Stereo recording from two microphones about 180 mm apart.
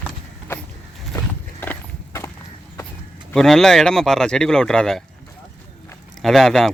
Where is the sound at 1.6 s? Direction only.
10° left (ahead or behind).